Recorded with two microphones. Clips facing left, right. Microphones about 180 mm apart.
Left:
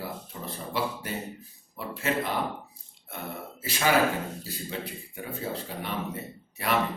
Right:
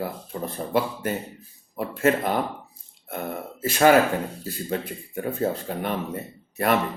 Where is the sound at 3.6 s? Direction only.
50° right (ahead or behind).